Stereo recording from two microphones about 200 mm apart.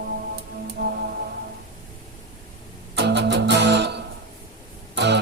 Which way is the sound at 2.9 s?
60° right (ahead or behind).